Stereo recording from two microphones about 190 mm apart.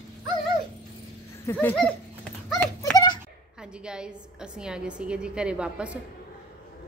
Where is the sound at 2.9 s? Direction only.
20° left (ahead or behind).